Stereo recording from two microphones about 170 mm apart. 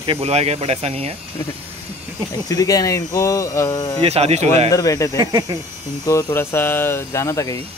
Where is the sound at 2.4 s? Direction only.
20° left (ahead or behind).